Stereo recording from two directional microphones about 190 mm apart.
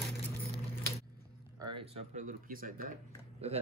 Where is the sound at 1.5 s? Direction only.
20° right (ahead or behind).